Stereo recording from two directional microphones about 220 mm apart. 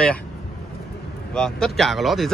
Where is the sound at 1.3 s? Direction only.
5° left (ahead or behind).